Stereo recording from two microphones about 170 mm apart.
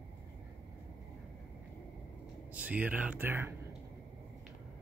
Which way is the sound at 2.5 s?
10° right (ahead or behind).